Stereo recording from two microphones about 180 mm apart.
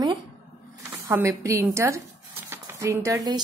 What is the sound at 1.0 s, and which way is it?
A woman's voice, 15° right (ahead or behind).